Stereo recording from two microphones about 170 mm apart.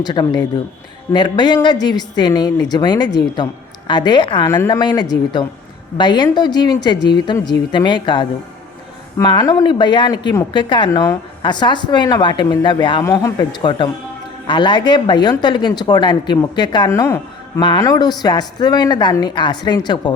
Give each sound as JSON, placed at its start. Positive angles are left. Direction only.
{"t": 0.0, "sound": "speech", "side_deg": 25}
{"t": 13.6, "sound": "speech", "side_deg": 30}